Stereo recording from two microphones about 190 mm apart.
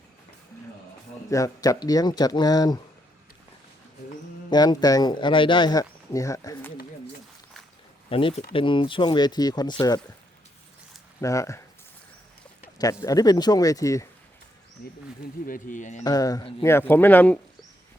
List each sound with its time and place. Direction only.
1.3 s speech: 15° left (ahead or behind)
4.4 s speech: 20° left (ahead or behind)
8.1 s speech: 30° left (ahead or behind)
11.2 s speech: 15° left (ahead or behind)
12.8 s speech: 20° left (ahead or behind)
15.4 s speech: 45° left (ahead or behind)
16.0 s speech: 20° left (ahead or behind)
16.6 s speech: 10° left (ahead or behind)